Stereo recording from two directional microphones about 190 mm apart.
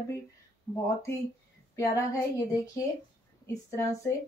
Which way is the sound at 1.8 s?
15° left (ahead or behind).